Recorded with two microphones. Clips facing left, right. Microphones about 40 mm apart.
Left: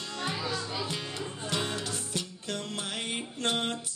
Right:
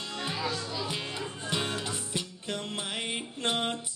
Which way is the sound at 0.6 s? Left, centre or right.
Left.